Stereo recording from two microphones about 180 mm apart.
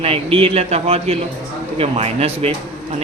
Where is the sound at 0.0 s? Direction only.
30° right (ahead or behind).